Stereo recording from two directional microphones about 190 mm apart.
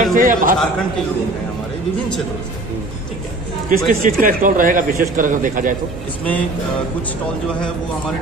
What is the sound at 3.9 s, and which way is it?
Speech, 45° right (ahead or behind).